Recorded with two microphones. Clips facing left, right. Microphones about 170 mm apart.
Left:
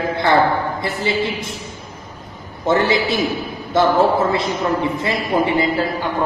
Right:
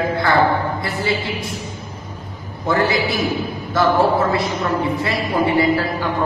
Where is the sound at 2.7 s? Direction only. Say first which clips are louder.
Left 2 dB; 25° left (ahead or behind).